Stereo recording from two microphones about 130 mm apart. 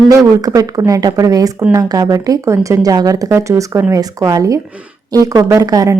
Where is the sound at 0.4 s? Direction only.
30° right (ahead or behind).